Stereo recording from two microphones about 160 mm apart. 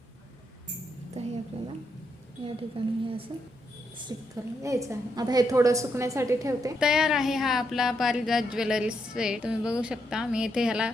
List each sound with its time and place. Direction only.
1.2 s a sound: 45° right (ahead or behind)
2.4 s a woman's voice: 35° right (ahead or behind)
4.1 s a woman's voice: 20° right (ahead or behind)
6.7 s speech: 5° right (ahead or behind)